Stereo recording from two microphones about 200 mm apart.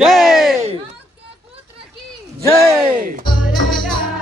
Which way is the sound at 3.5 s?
Centre (ahead or behind).